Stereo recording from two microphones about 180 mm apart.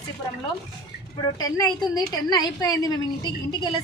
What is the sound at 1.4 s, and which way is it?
A woman's voice, 20° left (ahead or behind).